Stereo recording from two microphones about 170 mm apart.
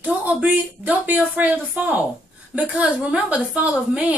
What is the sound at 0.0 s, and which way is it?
A woman's voice, 10° right (ahead or behind).